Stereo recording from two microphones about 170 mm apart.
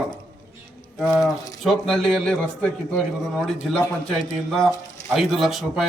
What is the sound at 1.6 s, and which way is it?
A man's voice, centre (ahead or behind).